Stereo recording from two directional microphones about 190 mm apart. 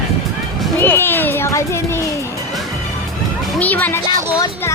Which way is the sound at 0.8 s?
10° left (ahead or behind).